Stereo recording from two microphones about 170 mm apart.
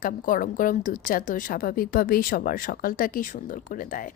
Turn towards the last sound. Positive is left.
turn(degrees=50)  # may be behind; listen again after turning